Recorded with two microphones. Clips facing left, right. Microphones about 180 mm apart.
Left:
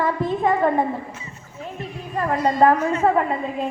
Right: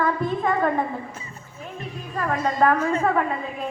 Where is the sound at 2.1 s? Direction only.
20° left (ahead or behind).